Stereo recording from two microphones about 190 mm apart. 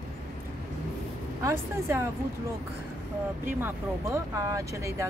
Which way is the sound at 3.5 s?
15° right (ahead or behind).